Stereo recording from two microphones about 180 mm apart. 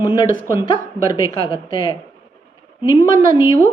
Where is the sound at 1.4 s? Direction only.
25° left (ahead or behind).